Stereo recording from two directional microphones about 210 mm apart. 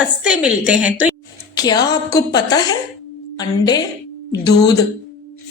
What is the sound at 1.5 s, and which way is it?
A woman's voice, 20° left (ahead or behind).